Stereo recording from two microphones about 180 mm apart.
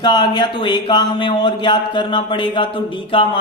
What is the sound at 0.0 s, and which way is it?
Speech, 25° left (ahead or behind).